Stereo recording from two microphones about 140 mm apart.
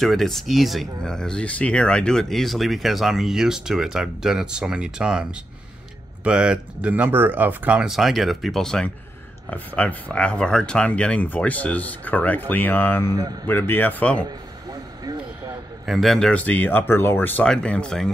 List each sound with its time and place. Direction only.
0.0 s speech: centre (ahead or behind)
13.1 s speech: 25° right (ahead or behind)
13.5 s speech: 15° left (ahead or behind)
14.2 s a sound: 25° right (ahead or behind)
15.8 s speech: centre (ahead or behind)